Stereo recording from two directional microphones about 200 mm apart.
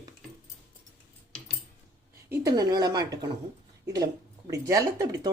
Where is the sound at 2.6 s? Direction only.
20° right (ahead or behind).